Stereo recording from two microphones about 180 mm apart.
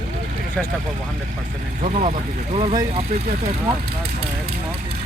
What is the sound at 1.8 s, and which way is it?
Speech, 40° right (ahead or behind).